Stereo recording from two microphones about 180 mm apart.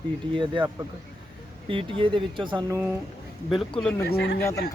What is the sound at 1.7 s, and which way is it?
Speech, 30° right (ahead or behind).